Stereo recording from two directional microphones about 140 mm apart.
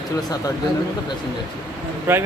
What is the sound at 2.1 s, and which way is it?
Speech, 15° right (ahead or behind).